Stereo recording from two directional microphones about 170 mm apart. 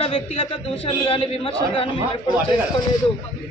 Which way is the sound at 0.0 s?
35° left (ahead or behind).